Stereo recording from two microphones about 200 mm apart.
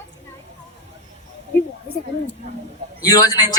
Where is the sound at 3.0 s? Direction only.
20° left (ahead or behind).